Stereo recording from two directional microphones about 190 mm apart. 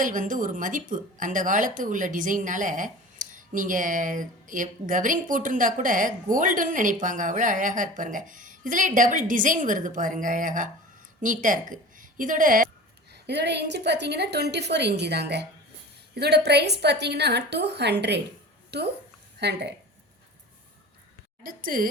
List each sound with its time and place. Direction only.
0.0 s a woman's voice: 45° right (ahead or behind)
13.1 s a woman's voice: 60° right (ahead or behind)
21.4 s speech: 45° right (ahead or behind)